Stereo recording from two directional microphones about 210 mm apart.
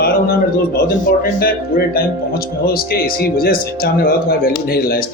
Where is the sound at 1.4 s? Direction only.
45° left (ahead or behind).